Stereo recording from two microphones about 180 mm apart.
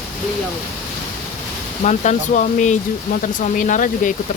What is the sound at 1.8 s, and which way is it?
Speech, 40° left (ahead or behind).